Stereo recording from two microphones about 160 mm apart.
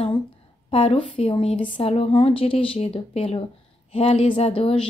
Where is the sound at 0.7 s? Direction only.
40° left (ahead or behind).